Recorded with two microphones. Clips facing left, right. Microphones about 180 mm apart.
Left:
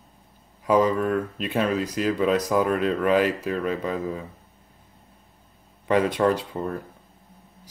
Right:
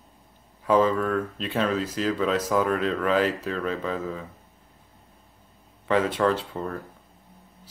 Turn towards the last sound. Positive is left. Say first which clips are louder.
# left 2 dB
turn(degrees=20)  # may be behind; listen again after turning